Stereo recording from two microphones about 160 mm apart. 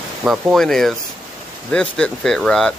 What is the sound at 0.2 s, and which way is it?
Speech, 5° right (ahead or behind).